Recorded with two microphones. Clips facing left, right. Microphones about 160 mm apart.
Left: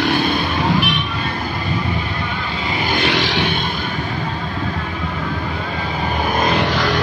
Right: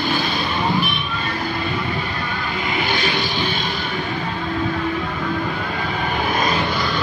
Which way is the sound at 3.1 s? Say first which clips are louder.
Left 4 dB; 85° left.